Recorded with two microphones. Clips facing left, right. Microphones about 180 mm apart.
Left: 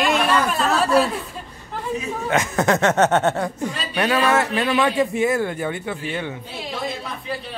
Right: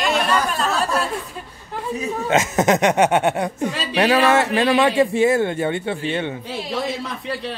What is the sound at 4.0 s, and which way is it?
A man's voice, 30° right (ahead or behind).